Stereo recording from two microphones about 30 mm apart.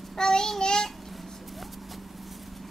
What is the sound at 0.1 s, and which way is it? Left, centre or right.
Child singing, centre.